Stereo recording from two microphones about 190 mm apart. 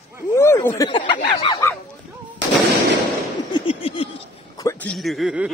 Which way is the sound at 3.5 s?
25° left (ahead or behind).